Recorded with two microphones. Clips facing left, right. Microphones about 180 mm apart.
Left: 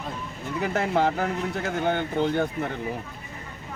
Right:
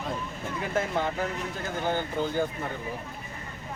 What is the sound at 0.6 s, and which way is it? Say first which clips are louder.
Speech: left 5 dB; 70° left (ahead or behind).